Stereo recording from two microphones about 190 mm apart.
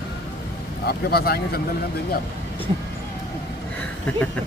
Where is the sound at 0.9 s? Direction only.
55° left (ahead or behind).